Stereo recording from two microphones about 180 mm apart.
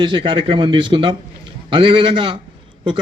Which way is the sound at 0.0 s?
25° right (ahead or behind).